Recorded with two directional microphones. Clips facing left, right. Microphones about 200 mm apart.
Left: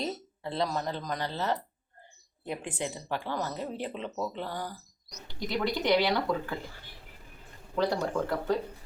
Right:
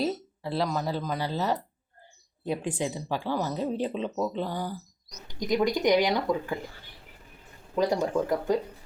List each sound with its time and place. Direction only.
0.0 s speech: 5° right (ahead or behind)
7.8 s speech: 15° right (ahead or behind)